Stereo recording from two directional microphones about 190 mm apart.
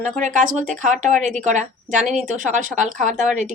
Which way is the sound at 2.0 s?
Centre (ahead or behind).